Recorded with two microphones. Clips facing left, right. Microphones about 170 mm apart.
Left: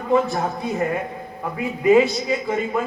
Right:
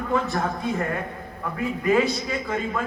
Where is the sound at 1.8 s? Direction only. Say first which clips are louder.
Left 6 dB; 20° left (ahead or behind).